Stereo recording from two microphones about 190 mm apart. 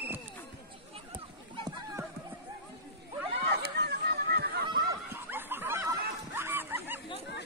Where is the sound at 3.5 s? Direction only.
60° right (ahead or behind).